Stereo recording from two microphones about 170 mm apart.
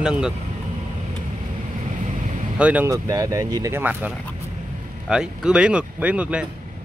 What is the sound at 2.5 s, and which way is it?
Speech, 5° right (ahead or behind).